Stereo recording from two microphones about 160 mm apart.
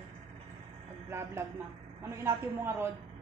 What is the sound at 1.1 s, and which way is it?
Speech, 15° right (ahead or behind).